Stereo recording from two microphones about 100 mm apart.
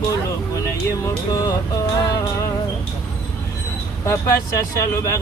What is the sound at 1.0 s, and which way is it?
Speech, 35° left (ahead or behind).